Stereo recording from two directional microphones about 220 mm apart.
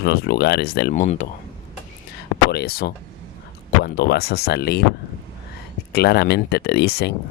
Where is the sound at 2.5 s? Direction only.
45° left (ahead or behind).